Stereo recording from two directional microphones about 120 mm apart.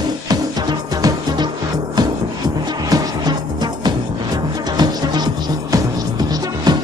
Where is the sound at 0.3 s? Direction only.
35° right (ahead or behind).